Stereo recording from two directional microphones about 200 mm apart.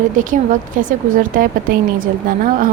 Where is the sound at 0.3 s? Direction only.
40° right (ahead or behind).